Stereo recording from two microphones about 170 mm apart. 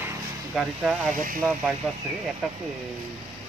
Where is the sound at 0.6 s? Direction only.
5° right (ahead or behind).